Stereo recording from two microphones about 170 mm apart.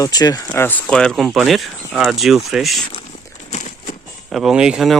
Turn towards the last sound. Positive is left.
turn(degrees=-5)  # may be behind; listen again after turning